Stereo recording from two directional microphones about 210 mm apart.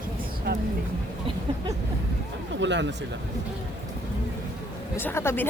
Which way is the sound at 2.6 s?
55° right (ahead or behind).